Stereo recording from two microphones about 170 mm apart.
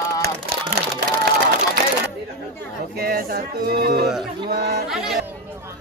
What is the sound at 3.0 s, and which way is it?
Speech, 60° right (ahead or behind).